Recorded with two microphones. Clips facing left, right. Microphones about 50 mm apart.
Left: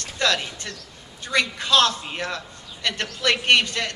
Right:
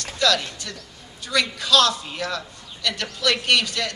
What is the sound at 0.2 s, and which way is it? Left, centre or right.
A man's voice, left.